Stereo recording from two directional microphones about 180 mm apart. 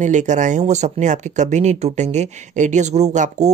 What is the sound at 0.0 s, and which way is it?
Speech, 40° right (ahead or behind).